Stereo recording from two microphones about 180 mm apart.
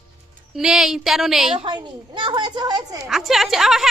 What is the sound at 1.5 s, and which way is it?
A woman's voice, 25° right (ahead or behind).